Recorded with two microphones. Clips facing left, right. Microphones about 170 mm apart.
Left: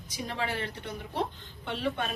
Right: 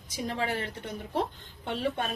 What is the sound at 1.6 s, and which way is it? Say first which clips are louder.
Speech: right 1 dB; 40° right (ahead or behind).